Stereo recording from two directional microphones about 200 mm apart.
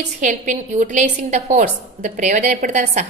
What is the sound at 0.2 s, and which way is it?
A woman's voice, 40° right (ahead or behind).